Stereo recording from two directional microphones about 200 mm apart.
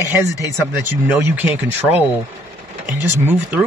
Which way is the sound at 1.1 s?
5° right (ahead or behind).